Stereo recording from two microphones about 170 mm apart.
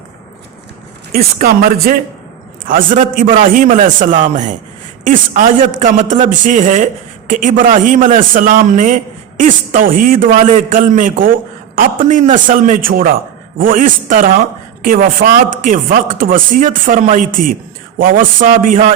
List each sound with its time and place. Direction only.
1.4 s a woman's voice: 60° right (ahead or behind)